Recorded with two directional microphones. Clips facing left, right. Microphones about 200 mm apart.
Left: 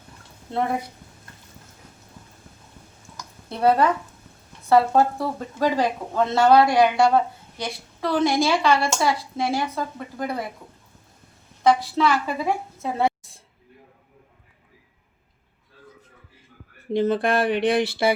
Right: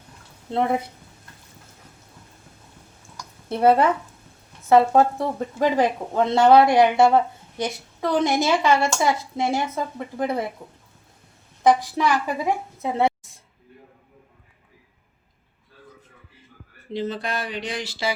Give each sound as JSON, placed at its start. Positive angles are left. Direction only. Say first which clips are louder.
{"t": 3.6, "sound": "speech", "louder": "right 2 dB", "side_deg": -25}
{"t": 11.6, "sound": "a woman's voice", "louder": "even", "side_deg": -15}
{"t": 16.9, "sound": "speech", "louder": "left 7 dB", "side_deg": 50}